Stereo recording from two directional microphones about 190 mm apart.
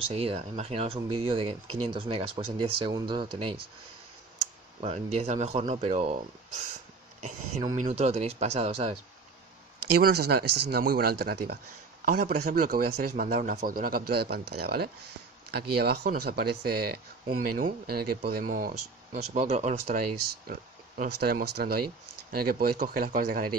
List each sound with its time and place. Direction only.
0.0 s speech: 30° right (ahead or behind)
4.7 s speech: 35° right (ahead or behind)
9.9 s speech: 55° right (ahead or behind); by 20.0 s 35° right (ahead or behind)
20.0 s speech: 50° right (ahead or behind)